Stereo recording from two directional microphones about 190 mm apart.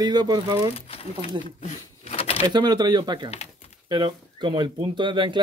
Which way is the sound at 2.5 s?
20° right (ahead or behind).